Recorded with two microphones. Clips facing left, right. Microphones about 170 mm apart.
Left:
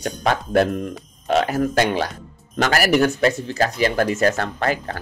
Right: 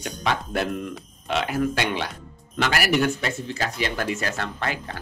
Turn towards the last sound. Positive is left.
turn(degrees=45)  # may be behind; listen again after turning